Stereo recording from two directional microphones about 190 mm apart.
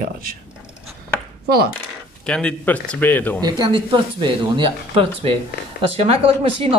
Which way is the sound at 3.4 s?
25° right (ahead or behind).